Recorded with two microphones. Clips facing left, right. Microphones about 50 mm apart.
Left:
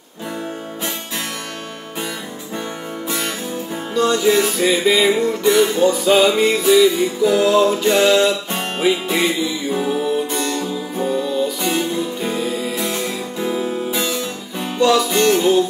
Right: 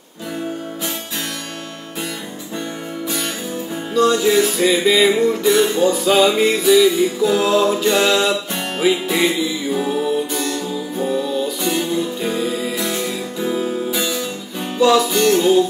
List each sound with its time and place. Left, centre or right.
3.9 s music: centre
10.3 s music: left
11.1 s music: centre
14.8 s music: centre
15.0 s music: left